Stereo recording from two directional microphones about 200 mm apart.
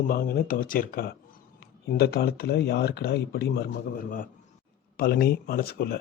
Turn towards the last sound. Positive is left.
turn(degrees=50)  # may be behind; listen again after turning